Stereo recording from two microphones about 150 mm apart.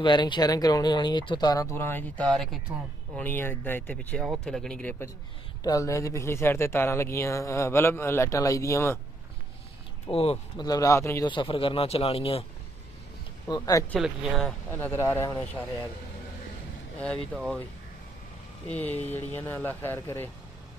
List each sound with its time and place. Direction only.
0.0 s speech: 30° left (ahead or behind); by 5.1 s 10° left (ahead or behind)
5.6 s speech: 25° left (ahead or behind)
10.1 s speech: 40° left (ahead or behind)
10.6 s speech: 25° left (ahead or behind)
11.2 s speech: 35° left (ahead or behind)
13.5 s speech: 25° left (ahead or behind)
13.8 s speech: centre (ahead or behind)
14.7 s speech: 15° left (ahead or behind)
18.7 s speech: 10° left (ahead or behind)